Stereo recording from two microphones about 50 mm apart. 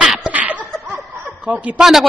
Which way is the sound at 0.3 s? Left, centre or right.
Right.